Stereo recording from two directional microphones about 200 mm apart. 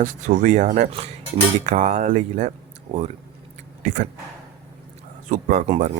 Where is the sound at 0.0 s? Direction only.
40° right (ahead or behind).